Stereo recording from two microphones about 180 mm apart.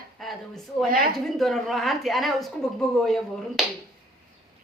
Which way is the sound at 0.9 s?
55° right (ahead or behind).